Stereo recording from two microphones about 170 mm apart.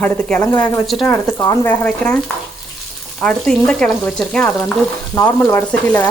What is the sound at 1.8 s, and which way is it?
Speech, 10° left (ahead or behind).